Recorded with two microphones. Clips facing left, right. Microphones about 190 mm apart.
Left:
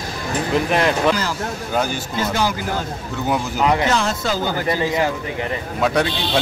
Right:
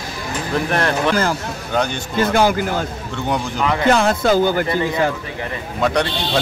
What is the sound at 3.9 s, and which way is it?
Speech, 55° right (ahead or behind).